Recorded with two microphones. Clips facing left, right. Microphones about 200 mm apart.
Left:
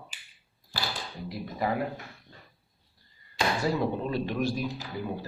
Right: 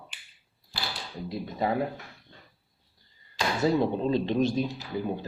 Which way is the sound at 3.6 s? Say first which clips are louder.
Right 7 dB; 25° right (ahead or behind).